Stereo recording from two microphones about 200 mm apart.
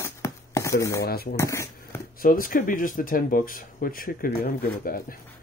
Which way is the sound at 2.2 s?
45° left (ahead or behind).